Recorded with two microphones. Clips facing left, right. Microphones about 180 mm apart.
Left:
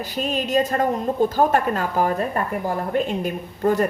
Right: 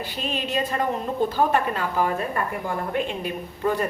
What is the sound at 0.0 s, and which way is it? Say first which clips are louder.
A woman's voice: left 4 dB; 40° left (ahead or behind).